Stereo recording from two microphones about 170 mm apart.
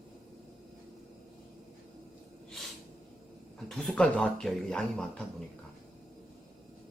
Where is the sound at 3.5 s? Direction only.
Centre (ahead or behind).